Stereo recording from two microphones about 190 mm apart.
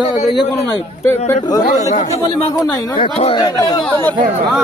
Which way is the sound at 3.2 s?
30° left (ahead or behind).